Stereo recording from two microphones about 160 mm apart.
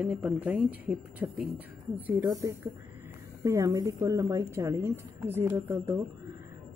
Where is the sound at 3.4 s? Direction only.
20° right (ahead or behind).